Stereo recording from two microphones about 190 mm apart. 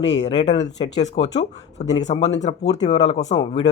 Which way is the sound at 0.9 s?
35° left (ahead or behind).